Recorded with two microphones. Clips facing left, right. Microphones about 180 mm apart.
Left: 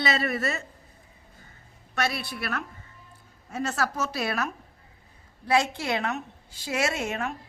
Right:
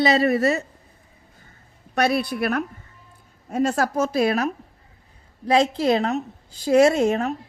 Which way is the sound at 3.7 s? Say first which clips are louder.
Right 8 dB; 45° right (ahead or behind).